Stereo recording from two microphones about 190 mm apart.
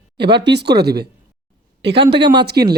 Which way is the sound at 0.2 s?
60° right (ahead or behind).